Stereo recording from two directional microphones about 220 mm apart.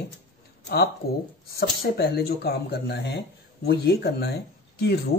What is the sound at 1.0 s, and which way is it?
Speech, 45° left (ahead or behind).